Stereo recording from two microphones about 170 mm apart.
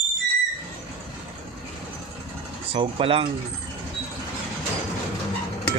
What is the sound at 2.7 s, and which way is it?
Speech, 35° right (ahead or behind).